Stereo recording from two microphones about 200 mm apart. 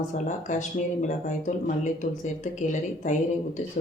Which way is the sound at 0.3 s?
40° left (ahead or behind).